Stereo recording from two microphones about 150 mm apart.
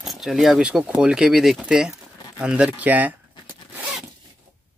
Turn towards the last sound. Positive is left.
turn(degrees=-10)  # may be behind; listen again after turning